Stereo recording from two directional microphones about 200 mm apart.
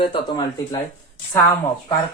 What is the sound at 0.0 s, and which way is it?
Speech, 25° left (ahead or behind).